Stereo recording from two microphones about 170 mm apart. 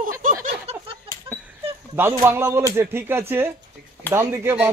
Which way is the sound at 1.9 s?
15° right (ahead or behind).